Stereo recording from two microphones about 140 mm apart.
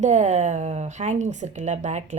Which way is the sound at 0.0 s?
55° right (ahead or behind).